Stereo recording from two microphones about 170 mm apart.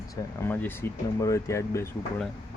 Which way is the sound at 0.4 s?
10° left (ahead or behind).